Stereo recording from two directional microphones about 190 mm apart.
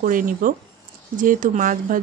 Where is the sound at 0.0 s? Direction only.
45° right (ahead or behind).